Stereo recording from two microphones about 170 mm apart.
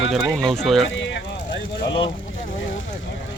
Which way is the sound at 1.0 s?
90° left.